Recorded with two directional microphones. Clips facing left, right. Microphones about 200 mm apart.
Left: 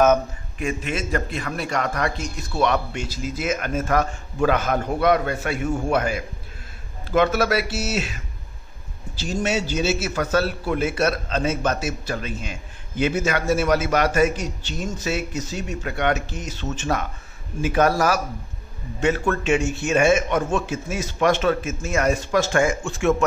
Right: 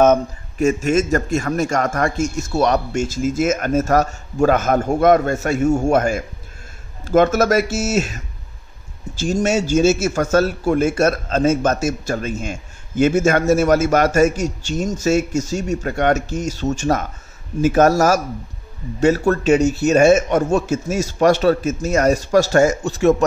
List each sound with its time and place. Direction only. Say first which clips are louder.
0.6 s a man's voice: right 10 dB; 45° right (ahead or behind)